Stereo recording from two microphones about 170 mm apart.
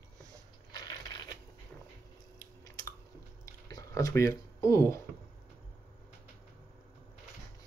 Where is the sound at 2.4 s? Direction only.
20° left (ahead or behind).